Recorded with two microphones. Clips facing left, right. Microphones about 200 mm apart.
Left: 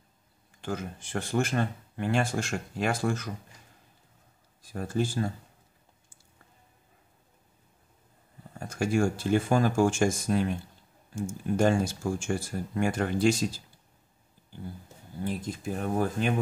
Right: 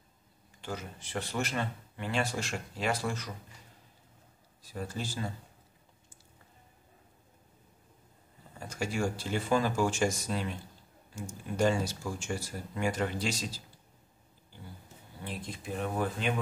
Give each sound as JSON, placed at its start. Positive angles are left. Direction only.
{"t": 0.6, "sound": "speech", "side_deg": 50}
{"t": 4.6, "sound": "speech", "side_deg": 50}
{"t": 8.5, "sound": "speech", "side_deg": 50}
{"t": 15.2, "sound": "speech", "side_deg": 45}